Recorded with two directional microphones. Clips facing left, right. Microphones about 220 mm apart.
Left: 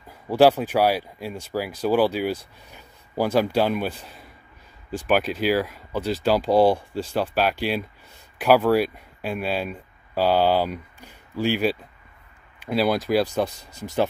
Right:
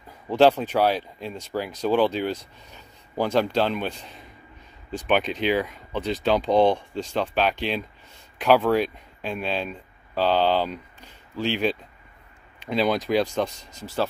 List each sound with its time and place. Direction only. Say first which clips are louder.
0.3 s speech: left 1 dB; 10° left (ahead or behind)